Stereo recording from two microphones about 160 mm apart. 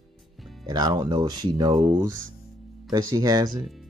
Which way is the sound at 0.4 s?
Centre (ahead or behind).